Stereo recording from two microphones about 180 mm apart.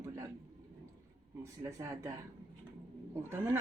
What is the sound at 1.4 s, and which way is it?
Speech, 15° right (ahead or behind).